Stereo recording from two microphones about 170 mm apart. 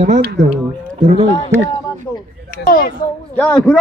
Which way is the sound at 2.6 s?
55° left (ahead or behind).